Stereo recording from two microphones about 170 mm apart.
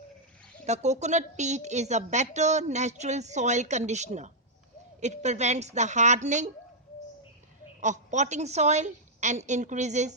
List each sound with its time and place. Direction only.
0.6 s a woman's voice: 40° right (ahead or behind)
7.8 s a woman's voice: 45° right (ahead or behind)